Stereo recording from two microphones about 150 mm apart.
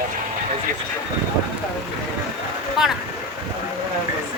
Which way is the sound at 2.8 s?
5° right (ahead or behind).